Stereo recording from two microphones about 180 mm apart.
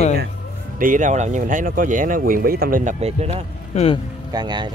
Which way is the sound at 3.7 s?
35° left (ahead or behind).